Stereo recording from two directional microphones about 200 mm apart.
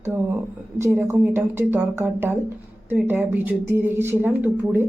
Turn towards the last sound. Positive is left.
turn(degrees=-10)  # may be behind; listen again after turning